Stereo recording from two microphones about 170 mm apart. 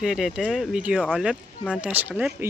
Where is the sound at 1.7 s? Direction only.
10° right (ahead or behind).